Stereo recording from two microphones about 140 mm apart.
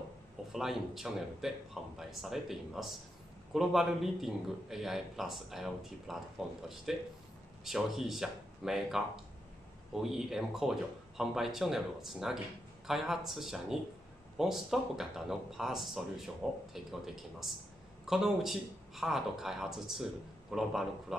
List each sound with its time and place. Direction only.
0.5 s a man's voice: centre (ahead or behind)